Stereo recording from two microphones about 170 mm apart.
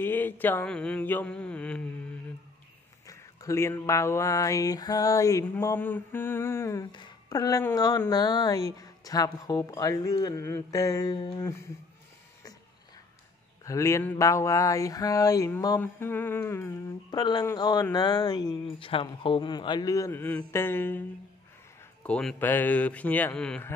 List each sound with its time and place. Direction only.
0.0 s speech: 10° left (ahead or behind)
3.1 s speech: 20° left (ahead or behind)
6.9 s speech: 25° left (ahead or behind)
13.7 s speech: 15° left (ahead or behind)
17.2 s speech: 25° left (ahead or behind)
22.0 s speech: 5° left (ahead or behind)